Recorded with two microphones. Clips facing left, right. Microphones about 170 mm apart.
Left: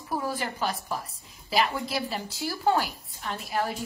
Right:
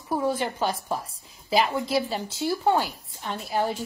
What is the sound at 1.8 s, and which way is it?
A woman's voice, 25° right (ahead or behind).